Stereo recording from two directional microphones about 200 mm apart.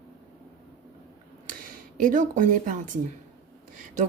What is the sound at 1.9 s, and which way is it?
Speech, 40° right (ahead or behind).